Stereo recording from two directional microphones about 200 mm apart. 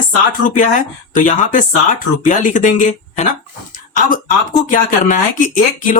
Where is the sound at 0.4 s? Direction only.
40° left (ahead or behind).